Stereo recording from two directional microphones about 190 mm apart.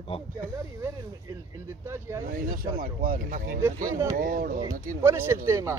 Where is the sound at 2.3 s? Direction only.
45° right (ahead or behind).